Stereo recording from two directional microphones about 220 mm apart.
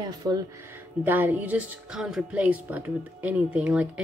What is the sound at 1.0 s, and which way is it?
A woman's voice, 10° right (ahead or behind).